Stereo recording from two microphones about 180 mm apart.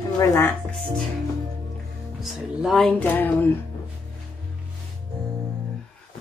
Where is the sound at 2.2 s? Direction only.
Centre (ahead or behind).